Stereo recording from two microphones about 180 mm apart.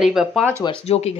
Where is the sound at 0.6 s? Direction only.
30° left (ahead or behind).